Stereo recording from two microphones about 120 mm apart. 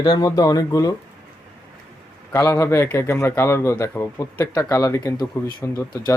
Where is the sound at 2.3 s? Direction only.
25° left (ahead or behind).